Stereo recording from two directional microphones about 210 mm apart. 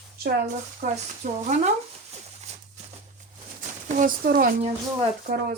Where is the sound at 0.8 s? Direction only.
45° right (ahead or behind).